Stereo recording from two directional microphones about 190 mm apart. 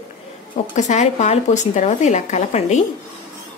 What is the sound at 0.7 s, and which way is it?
Speech, 40° left (ahead or behind).